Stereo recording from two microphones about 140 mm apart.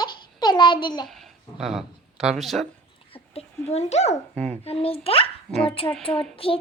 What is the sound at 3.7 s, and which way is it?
A child's voice, 50° left (ahead or behind).